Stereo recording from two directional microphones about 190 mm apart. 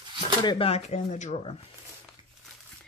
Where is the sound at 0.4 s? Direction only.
30° left (ahead or behind).